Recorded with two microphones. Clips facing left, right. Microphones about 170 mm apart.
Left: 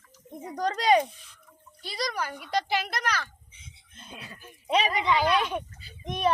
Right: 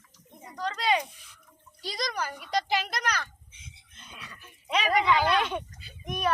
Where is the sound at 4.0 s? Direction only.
35° left (ahead or behind).